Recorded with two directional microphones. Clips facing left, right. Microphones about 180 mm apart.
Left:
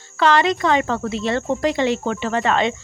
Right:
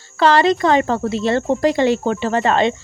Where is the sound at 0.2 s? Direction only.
35° right (ahead or behind).